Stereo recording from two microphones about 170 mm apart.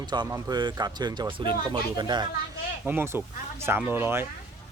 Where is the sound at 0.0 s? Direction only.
25° right (ahead or behind).